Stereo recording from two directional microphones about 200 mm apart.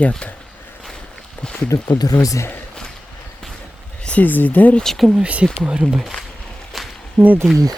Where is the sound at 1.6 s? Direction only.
10° left (ahead or behind); by 5.5 s 5° right (ahead or behind).